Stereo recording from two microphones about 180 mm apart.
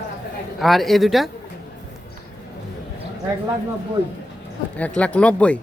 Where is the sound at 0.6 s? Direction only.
Centre (ahead or behind).